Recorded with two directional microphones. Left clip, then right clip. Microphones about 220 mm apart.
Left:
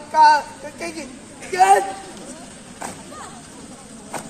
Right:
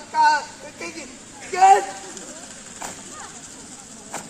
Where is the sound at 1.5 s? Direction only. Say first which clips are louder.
Even; 35° left (ahead or behind).